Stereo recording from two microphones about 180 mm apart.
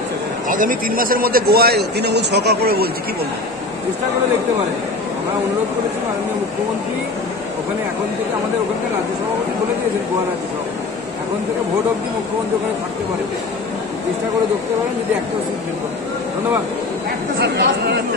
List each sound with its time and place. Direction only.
0.5 s a man's voice: 50° right (ahead or behind)
17.4 s speech: 75° right (ahead or behind)